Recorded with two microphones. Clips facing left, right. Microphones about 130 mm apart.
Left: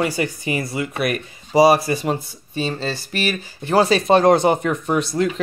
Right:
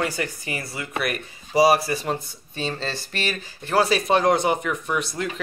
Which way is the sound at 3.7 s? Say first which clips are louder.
Left 5 dB; 25° left (ahead or behind).